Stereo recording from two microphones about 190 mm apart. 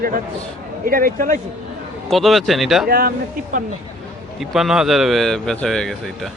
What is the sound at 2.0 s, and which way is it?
Speech, centre (ahead or behind).